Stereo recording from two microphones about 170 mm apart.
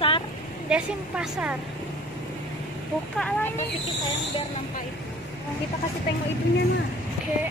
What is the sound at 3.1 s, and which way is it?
Speech, 10° left (ahead or behind).